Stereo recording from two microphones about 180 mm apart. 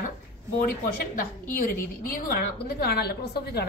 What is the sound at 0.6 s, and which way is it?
A woman's voice, 55° left (ahead or behind).